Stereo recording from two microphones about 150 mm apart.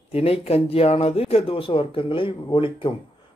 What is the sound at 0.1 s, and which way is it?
A man's voice, 40° left (ahead or behind).